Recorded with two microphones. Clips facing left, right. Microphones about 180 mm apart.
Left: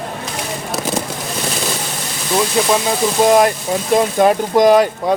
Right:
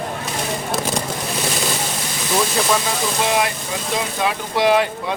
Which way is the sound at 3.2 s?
45° left (ahead or behind).